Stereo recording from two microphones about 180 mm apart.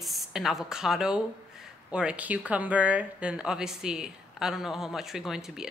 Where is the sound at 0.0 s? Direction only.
Centre (ahead or behind).